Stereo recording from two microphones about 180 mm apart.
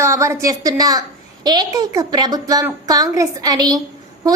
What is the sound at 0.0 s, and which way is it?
A woman's voice, 15° right (ahead or behind).